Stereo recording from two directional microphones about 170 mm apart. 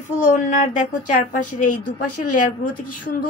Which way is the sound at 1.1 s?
50° left (ahead or behind).